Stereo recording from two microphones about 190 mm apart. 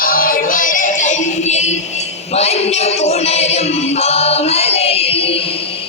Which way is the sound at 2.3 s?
35° left (ahead or behind).